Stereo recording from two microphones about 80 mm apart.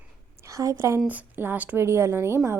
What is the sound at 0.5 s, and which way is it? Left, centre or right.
Speech, right.